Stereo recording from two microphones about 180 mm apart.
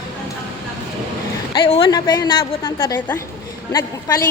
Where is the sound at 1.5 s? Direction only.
30° left (ahead or behind).